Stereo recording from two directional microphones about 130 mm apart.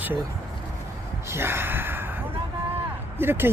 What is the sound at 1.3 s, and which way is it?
Gasp, 20° right (ahead or behind).